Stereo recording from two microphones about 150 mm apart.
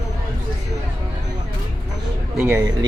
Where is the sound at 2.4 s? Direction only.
5° right (ahead or behind).